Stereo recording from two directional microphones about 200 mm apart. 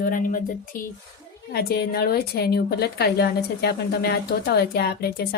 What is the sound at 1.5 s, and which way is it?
A woman's voice, 50° left (ahead or behind).